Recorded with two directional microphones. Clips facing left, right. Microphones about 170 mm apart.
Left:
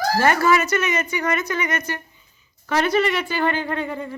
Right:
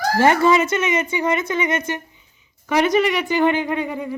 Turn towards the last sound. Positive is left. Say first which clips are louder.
# right 3 dB
turn(degrees=-10)  # may be behind; listen again after turning